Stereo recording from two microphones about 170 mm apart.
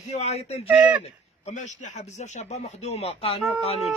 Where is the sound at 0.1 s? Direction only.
40° left (ahead or behind).